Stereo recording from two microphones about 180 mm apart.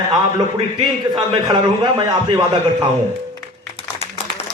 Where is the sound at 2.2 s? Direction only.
25° right (ahead or behind).